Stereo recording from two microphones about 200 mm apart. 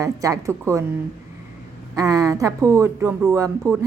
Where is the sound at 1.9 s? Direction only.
15° right (ahead or behind).